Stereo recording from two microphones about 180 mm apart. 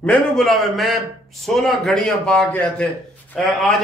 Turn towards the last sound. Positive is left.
turn(degrees=0)  # may be behind; listen again after turning